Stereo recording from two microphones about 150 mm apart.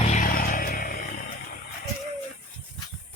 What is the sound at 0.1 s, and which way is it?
Vehicle, 65° left (ahead or behind).